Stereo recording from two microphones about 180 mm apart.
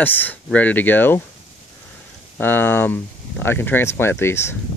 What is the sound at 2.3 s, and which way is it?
Speech, 10° left (ahead or behind).